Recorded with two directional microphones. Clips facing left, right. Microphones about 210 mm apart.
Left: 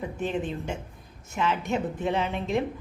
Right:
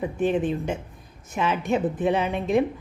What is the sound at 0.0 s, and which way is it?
A woman's voice, 20° right (ahead or behind).